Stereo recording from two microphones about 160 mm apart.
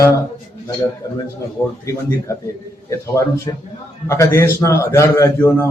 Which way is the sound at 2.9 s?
20° left (ahead or behind).